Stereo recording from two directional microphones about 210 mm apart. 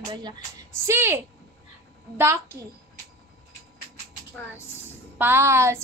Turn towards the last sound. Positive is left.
turn(degrees=-10)  # may be behind; listen again after turning